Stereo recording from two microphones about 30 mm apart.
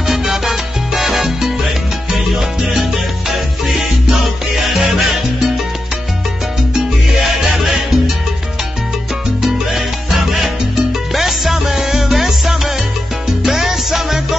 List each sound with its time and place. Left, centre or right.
0.1 s salsa music: centre
2.7 s salsa music: centre
7.1 s music: centre
9.4 s salsa music: centre
11.1 s music: centre